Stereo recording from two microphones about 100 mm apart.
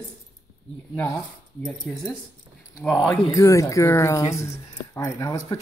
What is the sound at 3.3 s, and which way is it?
Speech, 30° left (ahead or behind).